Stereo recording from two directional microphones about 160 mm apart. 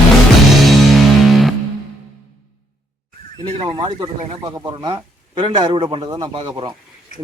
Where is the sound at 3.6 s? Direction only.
30° right (ahead or behind).